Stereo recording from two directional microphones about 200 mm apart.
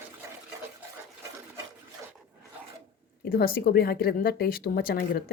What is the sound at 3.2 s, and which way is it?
A woman's voice, 45° left (ahead or behind).